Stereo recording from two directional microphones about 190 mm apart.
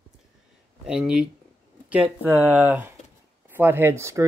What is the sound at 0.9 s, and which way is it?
Speech, 5° right (ahead or behind).